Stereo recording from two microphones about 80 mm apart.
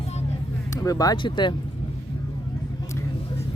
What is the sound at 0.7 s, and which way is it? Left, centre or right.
Speech, left.